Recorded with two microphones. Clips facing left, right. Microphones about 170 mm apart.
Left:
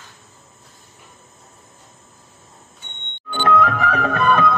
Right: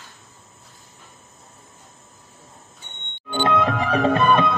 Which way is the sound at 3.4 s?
25° right (ahead or behind).